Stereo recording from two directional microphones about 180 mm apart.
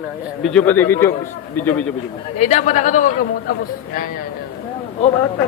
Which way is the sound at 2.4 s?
40° left (ahead or behind).